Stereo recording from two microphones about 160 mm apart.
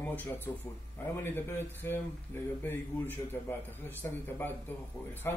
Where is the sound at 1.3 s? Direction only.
15° left (ahead or behind).